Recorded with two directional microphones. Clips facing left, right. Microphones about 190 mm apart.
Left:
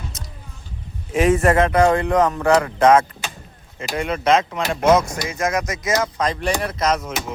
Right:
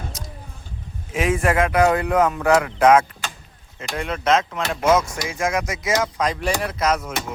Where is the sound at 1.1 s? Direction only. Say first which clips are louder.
Left 4 dB; 5° right (ahead or behind).